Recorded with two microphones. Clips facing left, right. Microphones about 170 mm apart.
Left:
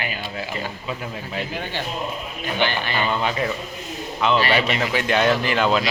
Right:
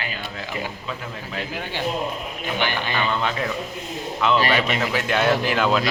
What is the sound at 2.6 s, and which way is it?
Speech, 15° right (ahead or behind).